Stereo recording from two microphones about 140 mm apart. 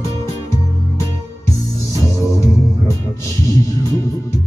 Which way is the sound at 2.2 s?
20° left (ahead or behind).